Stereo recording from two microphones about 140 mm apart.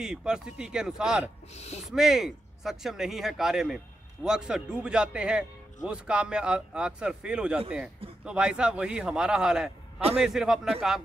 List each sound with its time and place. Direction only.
0.0 s speech: 5° right (ahead or behind)
1.5 s speech: 50° left (ahead or behind)
1.9 s speech: 5° right (ahead or behind)